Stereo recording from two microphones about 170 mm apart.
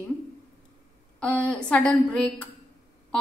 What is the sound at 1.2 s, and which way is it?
A woman's voice, 5° left (ahead or behind).